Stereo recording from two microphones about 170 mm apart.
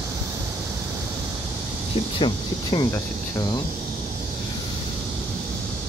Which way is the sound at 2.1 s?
30° left (ahead or behind).